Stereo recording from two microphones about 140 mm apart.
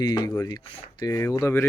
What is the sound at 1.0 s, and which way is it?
Speech, 25° left (ahead or behind).